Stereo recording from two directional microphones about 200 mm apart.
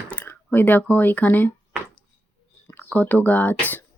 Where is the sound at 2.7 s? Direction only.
10° left (ahead or behind).